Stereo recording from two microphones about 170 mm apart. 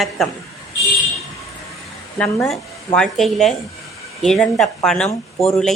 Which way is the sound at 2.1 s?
5° left (ahead or behind).